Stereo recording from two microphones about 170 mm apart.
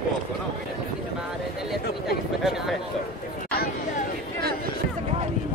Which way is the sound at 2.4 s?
Centre (ahead or behind).